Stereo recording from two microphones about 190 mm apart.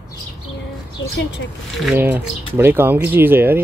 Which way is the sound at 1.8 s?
5° right (ahead or behind).